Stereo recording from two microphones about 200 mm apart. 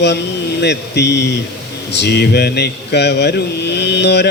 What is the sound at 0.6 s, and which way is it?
Speech, 60° left (ahead or behind).